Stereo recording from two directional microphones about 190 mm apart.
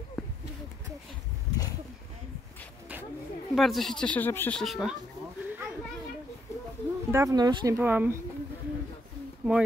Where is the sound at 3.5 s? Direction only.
Centre (ahead or behind).